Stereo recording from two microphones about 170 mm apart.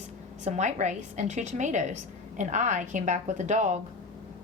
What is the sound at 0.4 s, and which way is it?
A woman's voice, 45° right (ahead or behind).